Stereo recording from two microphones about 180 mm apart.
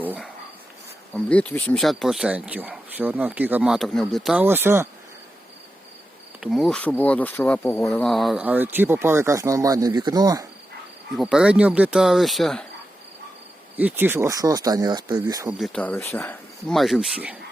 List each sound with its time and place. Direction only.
0.0 s a sound: 10° right (ahead or behind)
1.1 s speech: 5° left (ahead or behind); by 4.9 s 15° right (ahead or behind)
6.4 s speech: centre (ahead or behind); by 10.4 s 20° right (ahead or behind)
11.2 s speech: 5° right (ahead or behind)
13.7 s speech: 10° right (ahead or behind)
15.4 s speech: centre (ahead or behind)